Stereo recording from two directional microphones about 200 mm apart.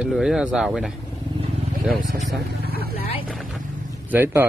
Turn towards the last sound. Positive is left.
turn(degrees=-10)  # may be behind; listen again after turning